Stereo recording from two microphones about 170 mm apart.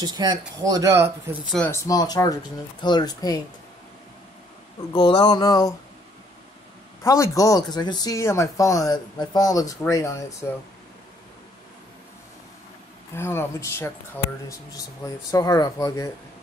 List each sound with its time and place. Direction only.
0.0 s speech: 25° right (ahead or behind)
1.7 s speech: 20° left (ahead or behind)
4.9 s speech: 25° left (ahead or behind)
7.0 s speech: 20° left (ahead or behind)
13.1 s speech: 15° left (ahead or behind)